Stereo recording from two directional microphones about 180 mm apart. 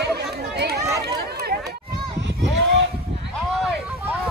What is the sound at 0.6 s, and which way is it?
Run, 65° right (ahead or behind).